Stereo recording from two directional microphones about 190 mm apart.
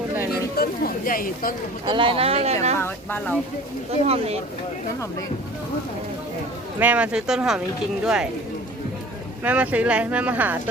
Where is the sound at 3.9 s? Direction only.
35° right (ahead or behind).